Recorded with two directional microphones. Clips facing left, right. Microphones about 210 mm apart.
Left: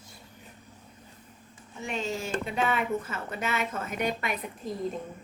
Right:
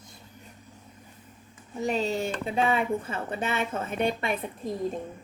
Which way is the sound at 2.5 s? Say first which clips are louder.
Right 3 dB; 30° right (ahead or behind).